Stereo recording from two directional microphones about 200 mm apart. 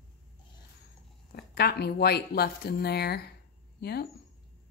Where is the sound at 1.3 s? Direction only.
50° left (ahead or behind).